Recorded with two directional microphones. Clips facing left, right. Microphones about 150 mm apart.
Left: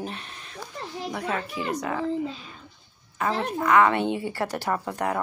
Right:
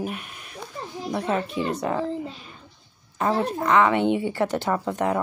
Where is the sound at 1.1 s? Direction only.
25° right (ahead or behind).